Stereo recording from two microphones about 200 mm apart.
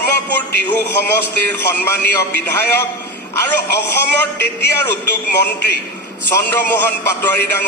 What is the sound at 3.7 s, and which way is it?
A man's voice, 55° left (ahead or behind).